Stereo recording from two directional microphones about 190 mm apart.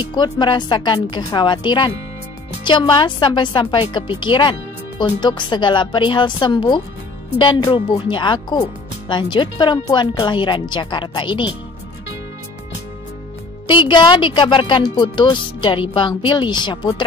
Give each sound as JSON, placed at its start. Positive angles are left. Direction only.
{"t": 0.0, "sound": "speech", "side_deg": 20}
{"t": 13.7, "sound": "speech", "side_deg": 25}